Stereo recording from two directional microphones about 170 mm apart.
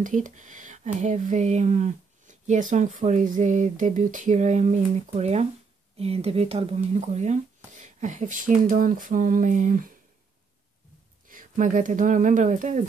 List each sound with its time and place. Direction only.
0.0 s speech: 50° right (ahead or behind)
11.2 s speech: 50° right (ahead or behind)